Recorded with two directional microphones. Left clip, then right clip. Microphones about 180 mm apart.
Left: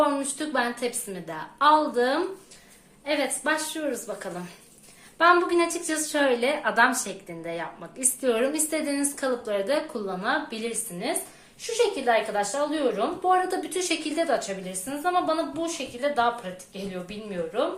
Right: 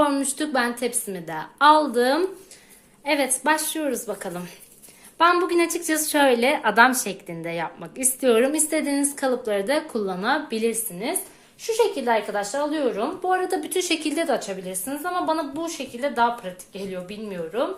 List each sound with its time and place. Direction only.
0.0 s a woman's voice: 50° right (ahead or behind)